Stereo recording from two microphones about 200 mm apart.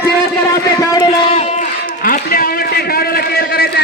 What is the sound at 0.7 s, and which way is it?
Speech, 20° left (ahead or behind).